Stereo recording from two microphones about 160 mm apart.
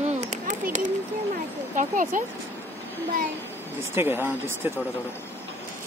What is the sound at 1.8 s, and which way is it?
Speech, 55° right (ahead or behind).